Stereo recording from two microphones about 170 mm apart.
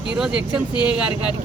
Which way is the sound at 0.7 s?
25° left (ahead or behind).